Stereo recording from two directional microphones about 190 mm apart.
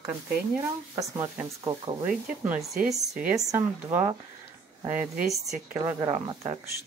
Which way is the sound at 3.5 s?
15° right (ahead or behind).